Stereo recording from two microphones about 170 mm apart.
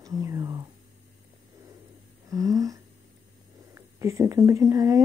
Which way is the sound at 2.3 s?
20° right (ahead or behind).